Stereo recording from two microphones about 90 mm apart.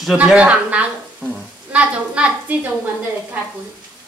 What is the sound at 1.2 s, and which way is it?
Speech, 5° right (ahead or behind).